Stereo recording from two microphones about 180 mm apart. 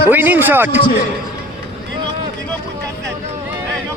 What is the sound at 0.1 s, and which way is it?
Speech, 10° right (ahead or behind).